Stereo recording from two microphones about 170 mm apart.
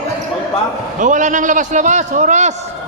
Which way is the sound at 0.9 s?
50° right (ahead or behind).